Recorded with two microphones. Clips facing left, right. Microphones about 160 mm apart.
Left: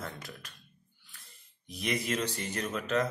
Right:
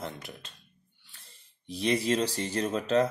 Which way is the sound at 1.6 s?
30° right (ahead or behind).